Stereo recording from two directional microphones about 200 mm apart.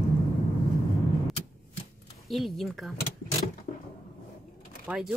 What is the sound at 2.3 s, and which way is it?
Speech, centre (ahead or behind).